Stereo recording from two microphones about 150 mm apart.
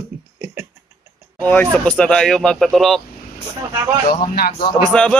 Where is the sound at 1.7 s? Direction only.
5° left (ahead or behind).